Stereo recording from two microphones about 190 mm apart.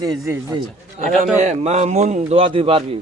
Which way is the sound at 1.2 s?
40° right (ahead or behind).